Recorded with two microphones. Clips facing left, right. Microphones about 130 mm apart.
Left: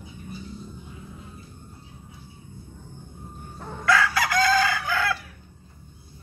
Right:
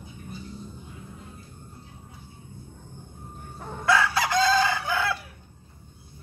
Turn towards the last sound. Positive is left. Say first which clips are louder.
# left 1 dB
turn(degrees=-20)  # may be behind; listen again after turning